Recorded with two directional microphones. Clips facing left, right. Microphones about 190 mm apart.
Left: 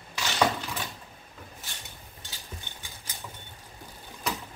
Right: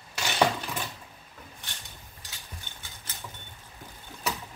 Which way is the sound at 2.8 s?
15° left (ahead or behind).